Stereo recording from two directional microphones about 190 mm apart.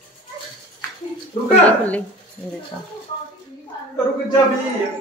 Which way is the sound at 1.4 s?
5° left (ahead or behind).